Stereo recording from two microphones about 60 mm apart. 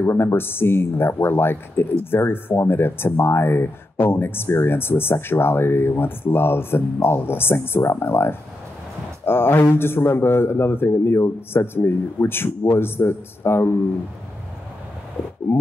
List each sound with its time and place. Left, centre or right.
0.0 s speech: left